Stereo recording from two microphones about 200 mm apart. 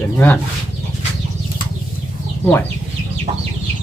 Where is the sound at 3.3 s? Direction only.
30° right (ahead or behind).